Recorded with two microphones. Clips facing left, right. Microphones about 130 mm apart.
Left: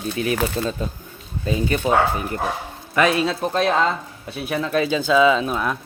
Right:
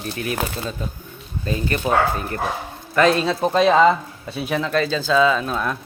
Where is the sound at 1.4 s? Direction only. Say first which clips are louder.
Left 2 dB; 15° left (ahead or behind).